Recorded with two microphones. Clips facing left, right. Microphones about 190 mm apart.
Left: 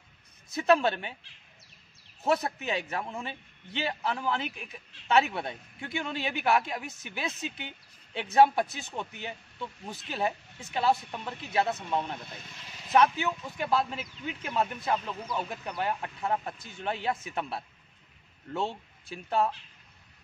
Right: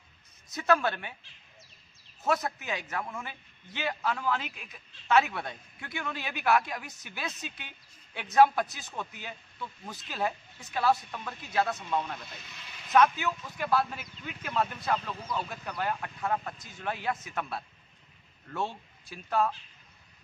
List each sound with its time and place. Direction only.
0.6 s a man's voice: 25° left (ahead or behind)
2.2 s a man's voice: 25° left (ahead or behind)